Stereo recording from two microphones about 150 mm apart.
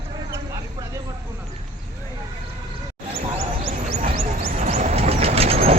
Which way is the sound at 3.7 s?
50° right (ahead or behind).